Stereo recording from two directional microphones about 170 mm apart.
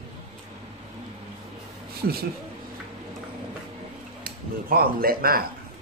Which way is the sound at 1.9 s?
65° right (ahead or behind).